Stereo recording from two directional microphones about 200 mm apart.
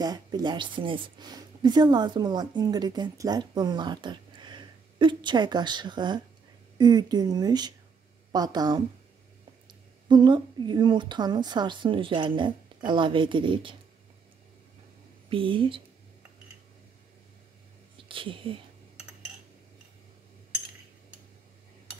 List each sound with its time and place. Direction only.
0.0 s speech: 20° right (ahead or behind)
10.0 s speech: 20° right (ahead or behind)
15.2 s speech: 25° right (ahead or behind)
17.9 s speech: 25° right (ahead or behind)